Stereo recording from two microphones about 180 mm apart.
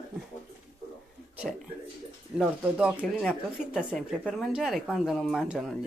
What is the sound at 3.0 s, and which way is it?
Speech, 10° left (ahead or behind).